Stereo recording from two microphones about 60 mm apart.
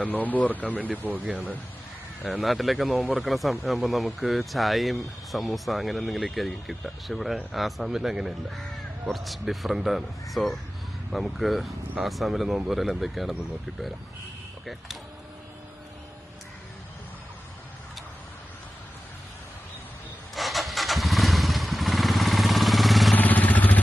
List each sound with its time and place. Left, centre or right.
0.0 s speech: left
1.0 s speech: right
2.4 s speech: centre
14.6 s speech: centre
20.3 s motorcycle: centre
23.1 s vehicle: left